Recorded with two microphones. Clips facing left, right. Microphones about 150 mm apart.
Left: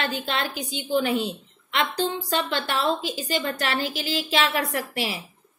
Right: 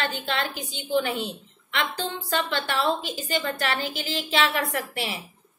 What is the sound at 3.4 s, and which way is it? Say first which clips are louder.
A woman's voice: even; 35° left (ahead or behind).